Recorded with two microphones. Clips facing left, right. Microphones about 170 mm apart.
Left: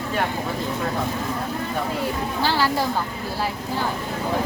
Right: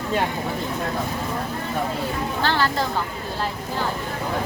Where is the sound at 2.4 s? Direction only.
10° left (ahead or behind).